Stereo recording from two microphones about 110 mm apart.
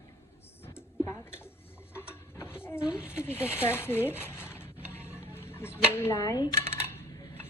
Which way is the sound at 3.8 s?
20° left (ahead or behind).